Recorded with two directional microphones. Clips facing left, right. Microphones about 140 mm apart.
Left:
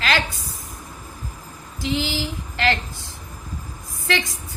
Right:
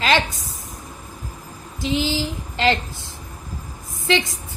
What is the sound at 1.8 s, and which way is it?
Female singing, 20° right (ahead or behind).